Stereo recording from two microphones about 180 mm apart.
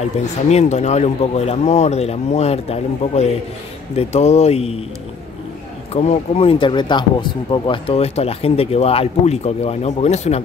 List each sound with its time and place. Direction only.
0.5 s speech: 40° left (ahead or behind)
5.9 s speech: 35° left (ahead or behind)